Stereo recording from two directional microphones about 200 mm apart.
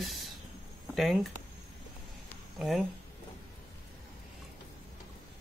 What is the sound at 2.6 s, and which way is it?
Speech, 5° right (ahead or behind).